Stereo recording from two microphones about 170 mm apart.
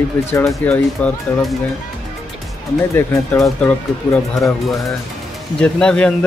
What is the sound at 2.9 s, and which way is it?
A man's voice, 15° left (ahead or behind).